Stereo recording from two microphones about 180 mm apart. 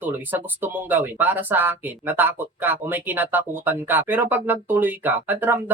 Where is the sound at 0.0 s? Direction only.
10° right (ahead or behind).